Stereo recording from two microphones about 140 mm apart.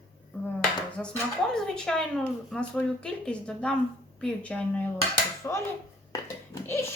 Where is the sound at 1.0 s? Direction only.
5° left (ahead or behind).